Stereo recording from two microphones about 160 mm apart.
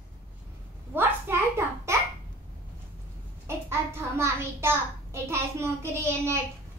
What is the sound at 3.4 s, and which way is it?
A child's voice, 15° right (ahead or behind).